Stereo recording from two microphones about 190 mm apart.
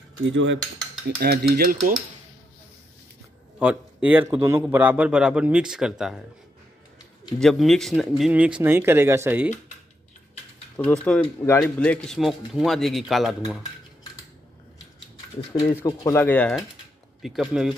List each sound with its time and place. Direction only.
0.2 s cutlery: 80° right
1.2 s speech: 55° right (ahead or behind)
3.5 s a man's voice: 5° right (ahead or behind)
7.3 s a man's voice: centre (ahead or behind)
10.8 s speech: 5° left (ahead or behind)
15.7 s speech: 15° left (ahead or behind); by 17.7 s centre (ahead or behind)